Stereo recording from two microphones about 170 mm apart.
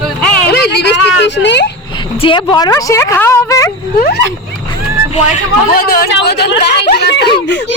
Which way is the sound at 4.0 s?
70° left (ahead or behind).